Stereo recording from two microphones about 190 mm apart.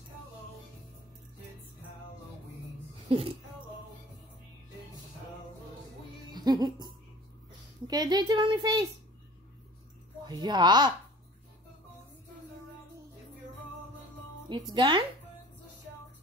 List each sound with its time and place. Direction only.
3.1 s speech: 30° right (ahead or behind)
6.3 s a woman's voice: 20° right (ahead or behind)
10.2 s a woman's voice: 20° right (ahead or behind)
14.7 s a woman's voice: 25° right (ahead or behind)